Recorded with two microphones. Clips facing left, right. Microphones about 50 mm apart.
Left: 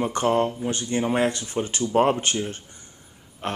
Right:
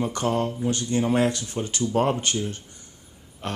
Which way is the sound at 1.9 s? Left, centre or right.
Left.